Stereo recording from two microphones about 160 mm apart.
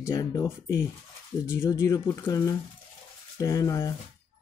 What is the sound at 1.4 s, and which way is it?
Speech, 15° left (ahead or behind).